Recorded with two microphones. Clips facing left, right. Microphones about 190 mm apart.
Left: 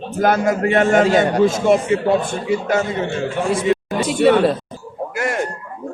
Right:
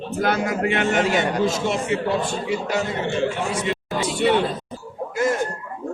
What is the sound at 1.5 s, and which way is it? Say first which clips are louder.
Speech: left 7 dB; 50° left (ahead or behind).